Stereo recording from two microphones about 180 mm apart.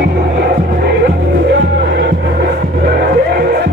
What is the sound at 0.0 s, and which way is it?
Music, 60° right (ahead or behind).